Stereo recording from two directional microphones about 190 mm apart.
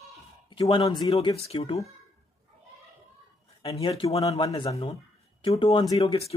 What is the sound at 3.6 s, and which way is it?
Speech, 30° left (ahead or behind).